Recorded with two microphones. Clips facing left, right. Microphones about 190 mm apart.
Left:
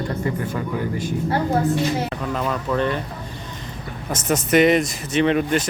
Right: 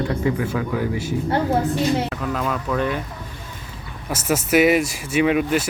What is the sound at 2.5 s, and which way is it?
Speech, 5° right (ahead or behind).